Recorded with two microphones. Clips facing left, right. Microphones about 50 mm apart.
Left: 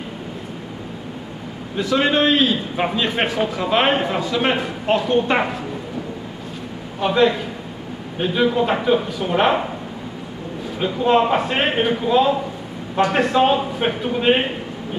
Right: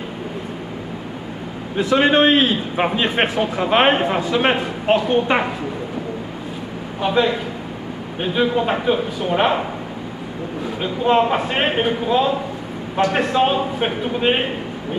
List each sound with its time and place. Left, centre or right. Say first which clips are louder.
1.8 s a man's voice: right 3 dB; right
7.0 s a man's voice: left 1 dB; centre
10.8 s a man's voice: even; centre